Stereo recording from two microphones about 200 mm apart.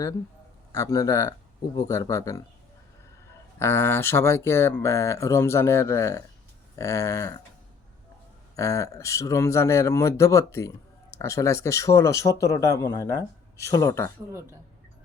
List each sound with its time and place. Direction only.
0.7 s speech: 15° left (ahead or behind)
3.6 s speech: 10° left (ahead or behind)
8.5 s speech: 15° left (ahead or behind)